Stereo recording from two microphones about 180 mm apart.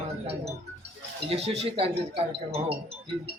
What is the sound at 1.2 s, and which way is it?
Speech, 35° right (ahead or behind).